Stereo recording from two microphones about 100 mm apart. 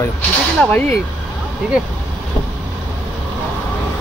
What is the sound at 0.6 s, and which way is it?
Speech, 15° left (ahead or behind).